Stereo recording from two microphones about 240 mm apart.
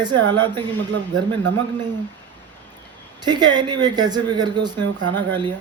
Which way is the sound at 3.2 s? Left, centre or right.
Centre.